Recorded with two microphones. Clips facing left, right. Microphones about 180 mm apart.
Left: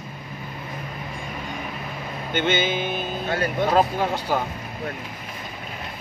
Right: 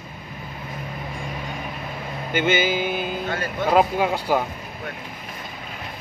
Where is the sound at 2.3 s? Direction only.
10° right (ahead or behind).